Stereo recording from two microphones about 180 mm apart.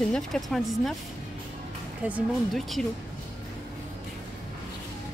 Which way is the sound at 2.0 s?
5° right (ahead or behind).